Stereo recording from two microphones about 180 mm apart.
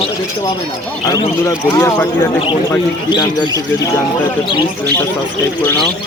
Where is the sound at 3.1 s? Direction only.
25° left (ahead or behind).